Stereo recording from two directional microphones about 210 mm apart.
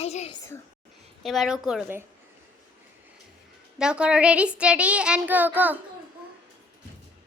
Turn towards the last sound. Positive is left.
turn(degrees=-10)  # may be behind; listen again after turning